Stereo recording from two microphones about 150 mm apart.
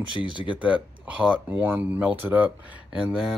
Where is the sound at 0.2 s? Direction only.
35° left (ahead or behind).